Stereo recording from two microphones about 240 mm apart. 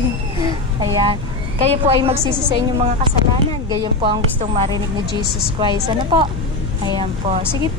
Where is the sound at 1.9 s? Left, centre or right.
Right.